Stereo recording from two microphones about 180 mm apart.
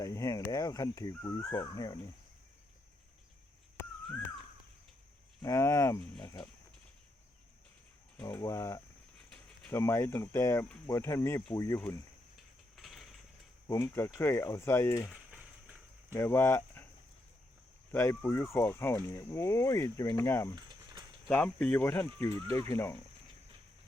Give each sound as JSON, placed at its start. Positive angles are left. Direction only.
{"t": 0.0, "sound": "speech", "side_deg": 15}
{"t": 5.4, "sound": "speech", "side_deg": 15}
{"t": 8.2, "sound": "speech", "side_deg": 20}
{"t": 12.7, "sound": "mechanisms", "side_deg": 0}
{"t": 13.7, "sound": "speech", "side_deg": 15}
{"t": 15.1, "sound": "a sound", "side_deg": -5}
{"t": 16.1, "sound": "speech", "side_deg": 15}
{"t": 17.9, "sound": "speech", "side_deg": 10}
{"t": 20.6, "sound": "a sound", "side_deg": -25}
{"t": 21.2, "sound": "speech", "side_deg": 5}